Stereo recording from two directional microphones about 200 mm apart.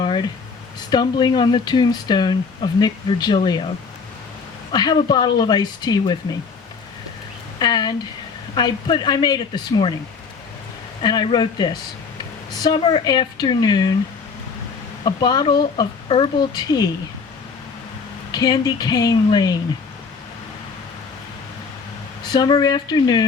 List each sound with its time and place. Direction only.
0.0 s a sound: 25° left (ahead or behind)
0.9 s speech: 20° left (ahead or behind)
4.7 s speech: 20° left (ahead or behind)
7.6 s speech: 20° left (ahead or behind)
11.0 s speech: 20° left (ahead or behind)
15.0 s speech: 20° left (ahead or behind)
18.3 s speech: 20° left (ahead or behind)
22.3 s speech: 20° left (ahead or behind)